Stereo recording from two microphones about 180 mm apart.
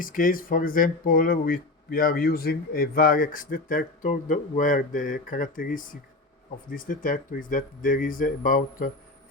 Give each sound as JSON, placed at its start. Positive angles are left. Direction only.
{"t": 0.0, "sound": "speech", "side_deg": 50}